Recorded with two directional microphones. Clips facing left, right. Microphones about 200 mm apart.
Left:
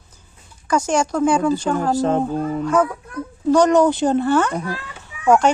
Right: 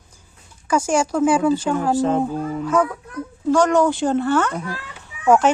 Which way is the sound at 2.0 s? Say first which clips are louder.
Even; 40° left (ahead or behind).